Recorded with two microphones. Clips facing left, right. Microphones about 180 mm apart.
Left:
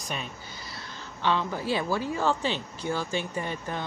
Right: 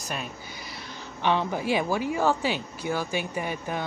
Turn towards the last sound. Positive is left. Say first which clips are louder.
# right 2 dB
turn(degrees=-10)  # may be behind; listen again after turning